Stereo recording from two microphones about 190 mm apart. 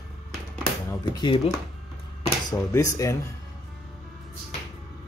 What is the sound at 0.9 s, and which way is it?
Speech, 20° left (ahead or behind).